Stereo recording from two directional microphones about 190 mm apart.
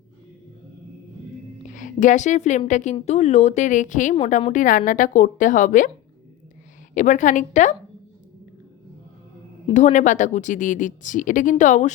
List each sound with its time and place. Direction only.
1.7 s a woman's voice: 40° left (ahead or behind)
6.9 s a woman's voice: 40° left (ahead or behind)
9.6 s a woman's voice: 40° left (ahead or behind)